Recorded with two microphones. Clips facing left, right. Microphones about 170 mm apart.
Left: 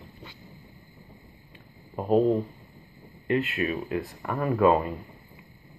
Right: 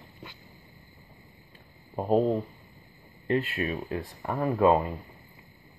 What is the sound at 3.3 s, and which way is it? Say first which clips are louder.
Speech: left 2 dB; 35° right (ahead or behind).